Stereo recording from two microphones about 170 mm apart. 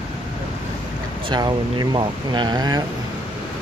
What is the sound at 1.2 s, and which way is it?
Speech, 25° right (ahead or behind).